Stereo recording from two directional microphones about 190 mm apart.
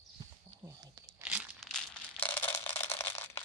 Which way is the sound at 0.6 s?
15° right (ahead or behind).